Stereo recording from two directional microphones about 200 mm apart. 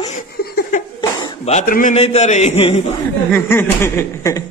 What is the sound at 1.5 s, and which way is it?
A man's voice, 40° left (ahead or behind).